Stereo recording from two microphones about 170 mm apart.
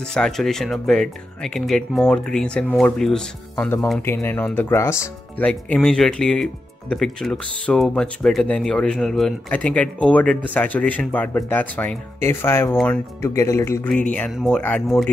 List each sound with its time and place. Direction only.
0.1 s speech: 5° left (ahead or behind)
5.5 s speech: 5° left (ahead or behind)
14.1 s speech: 5° left (ahead or behind)